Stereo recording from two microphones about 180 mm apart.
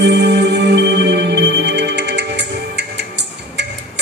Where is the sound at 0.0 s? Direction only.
70° right (ahead or behind).